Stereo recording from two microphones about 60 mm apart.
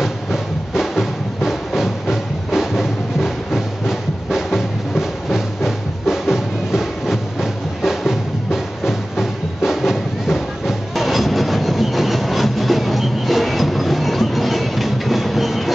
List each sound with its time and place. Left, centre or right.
0.0 s music: centre